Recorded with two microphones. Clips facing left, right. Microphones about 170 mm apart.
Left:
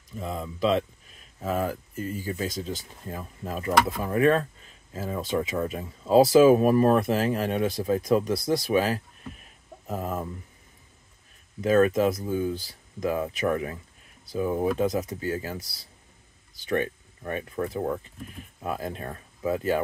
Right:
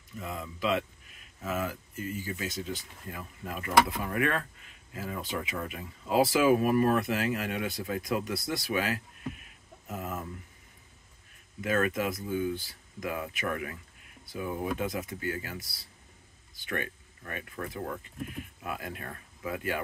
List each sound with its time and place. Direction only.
0.2 s speech: 30° left (ahead or behind)
11.6 s speech: 30° left (ahead or behind)
16.7 s speech: 30° left (ahead or behind)